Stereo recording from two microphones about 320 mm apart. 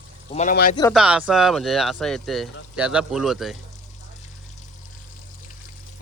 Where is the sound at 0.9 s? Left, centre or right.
Centre.